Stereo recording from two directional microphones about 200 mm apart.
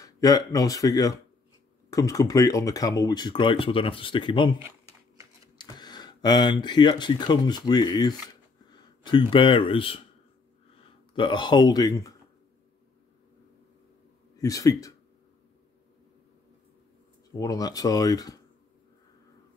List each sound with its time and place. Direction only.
0.0 s speech: 20° left (ahead or behind)
4.6 s a sound: 10° right (ahead or behind)
5.6 s speech: 20° left (ahead or behind)
11.1 s speech: 25° left (ahead or behind)
14.3 s speech: 15° left (ahead or behind)
17.4 s speech: 20° left (ahead or behind)